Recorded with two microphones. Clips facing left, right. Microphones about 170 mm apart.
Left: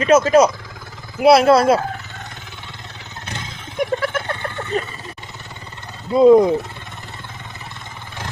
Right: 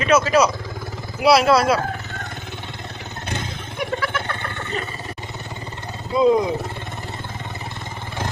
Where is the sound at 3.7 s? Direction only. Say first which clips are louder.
Left 5 dB; 45° left (ahead or behind).